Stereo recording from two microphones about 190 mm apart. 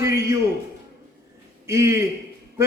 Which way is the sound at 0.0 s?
15° right (ahead or behind).